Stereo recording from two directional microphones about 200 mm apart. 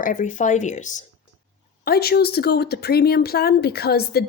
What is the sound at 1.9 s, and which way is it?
Speech, 50° left (ahead or behind).